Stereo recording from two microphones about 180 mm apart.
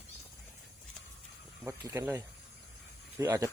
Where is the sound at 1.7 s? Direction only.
15° right (ahead or behind).